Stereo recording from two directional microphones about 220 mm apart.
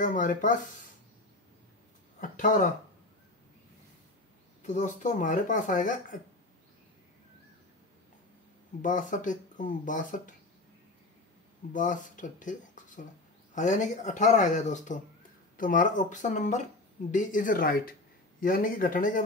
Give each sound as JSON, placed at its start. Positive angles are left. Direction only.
{"t": 0.0, "sound": "speech", "side_deg": 35}
{"t": 2.1, "sound": "speech", "side_deg": 35}
{"t": 4.6, "sound": "speech", "side_deg": 35}
{"t": 8.8, "sound": "speech", "side_deg": 35}
{"t": 11.7, "sound": "speech", "side_deg": 35}